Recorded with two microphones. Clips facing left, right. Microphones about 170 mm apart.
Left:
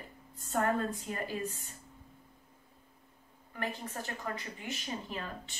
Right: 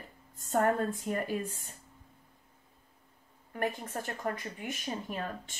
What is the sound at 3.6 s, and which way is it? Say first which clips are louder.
A woman's voice: right 4 dB; 50° right (ahead or behind).